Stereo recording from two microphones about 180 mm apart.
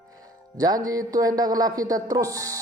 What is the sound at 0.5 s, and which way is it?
Speech, 20° right (ahead or behind).